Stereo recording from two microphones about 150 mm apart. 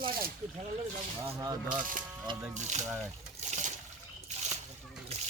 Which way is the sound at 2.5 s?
50° right (ahead or behind).